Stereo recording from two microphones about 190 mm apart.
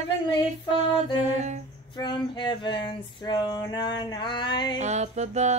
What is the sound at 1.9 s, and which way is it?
Female singing, 25° left (ahead or behind).